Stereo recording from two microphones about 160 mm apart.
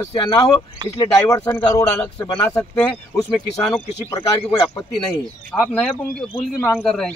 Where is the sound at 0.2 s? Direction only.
25° left (ahead or behind).